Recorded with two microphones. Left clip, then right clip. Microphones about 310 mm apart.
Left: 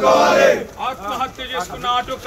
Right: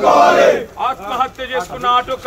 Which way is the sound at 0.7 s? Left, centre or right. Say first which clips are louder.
Right 5 dB; centre.